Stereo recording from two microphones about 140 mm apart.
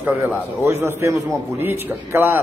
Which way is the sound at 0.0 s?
10° right (ahead or behind).